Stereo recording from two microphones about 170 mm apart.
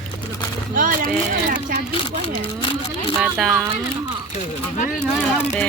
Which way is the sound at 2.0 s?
30° left (ahead or behind).